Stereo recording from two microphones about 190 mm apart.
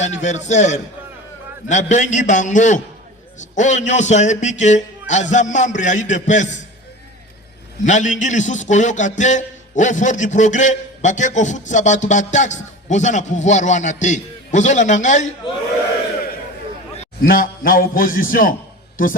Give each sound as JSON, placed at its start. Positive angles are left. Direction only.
{"t": 0.0, "sound": "a man's voice", "side_deg": 35}
{"t": 7.9, "sound": "a man's voice", "side_deg": 40}
{"t": 17.2, "sound": "a man's voice", "side_deg": 50}